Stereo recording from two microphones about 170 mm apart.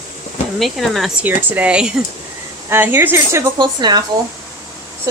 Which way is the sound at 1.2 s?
10° right (ahead or behind).